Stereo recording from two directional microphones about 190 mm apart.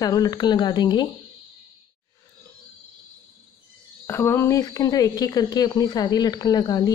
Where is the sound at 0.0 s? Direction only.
20° left (ahead or behind).